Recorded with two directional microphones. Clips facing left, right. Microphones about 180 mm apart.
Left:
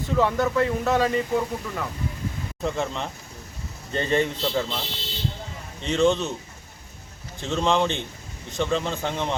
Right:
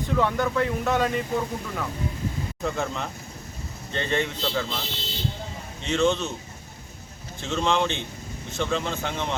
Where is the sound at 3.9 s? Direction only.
40° left (ahead or behind).